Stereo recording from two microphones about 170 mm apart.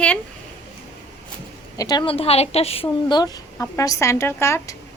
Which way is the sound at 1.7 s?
20° left (ahead or behind).